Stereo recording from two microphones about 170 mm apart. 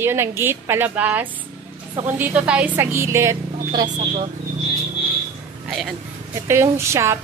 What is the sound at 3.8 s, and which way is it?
Speech, 45° right (ahead or behind).